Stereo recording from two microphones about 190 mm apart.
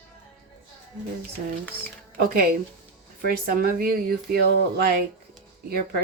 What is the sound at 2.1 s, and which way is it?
Speech, 55° right (ahead or behind).